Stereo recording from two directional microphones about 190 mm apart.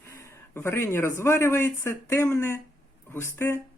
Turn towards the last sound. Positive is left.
turn(degrees=10)  # may be behind; listen again after turning